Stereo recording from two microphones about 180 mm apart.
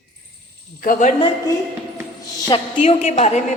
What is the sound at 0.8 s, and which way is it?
Speech, 50° left (ahead or behind).